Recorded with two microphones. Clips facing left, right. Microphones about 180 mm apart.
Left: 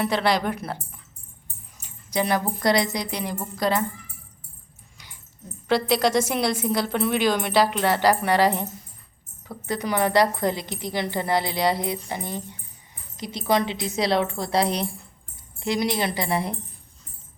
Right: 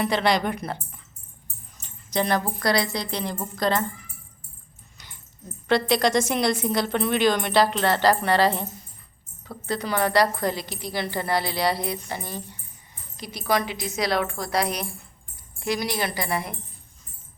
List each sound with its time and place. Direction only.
0.0 s speech: 5° left (ahead or behind)
1.8 s music: 10° left (ahead or behind)
2.4 s a woman's voice: 20° left (ahead or behind)
5.6 s a woman's voice: 5° left (ahead or behind)
9.6 s a woman's voice: 15° left (ahead or behind)